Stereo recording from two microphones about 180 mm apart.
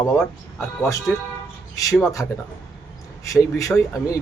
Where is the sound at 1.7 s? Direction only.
20° left (ahead or behind).